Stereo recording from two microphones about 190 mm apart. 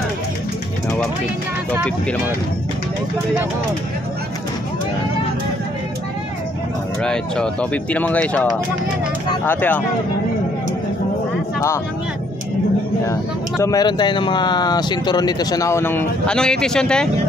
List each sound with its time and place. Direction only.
7.0 s speech: 5° left (ahead or behind)
13.0 s speech: 15° left (ahead or behind)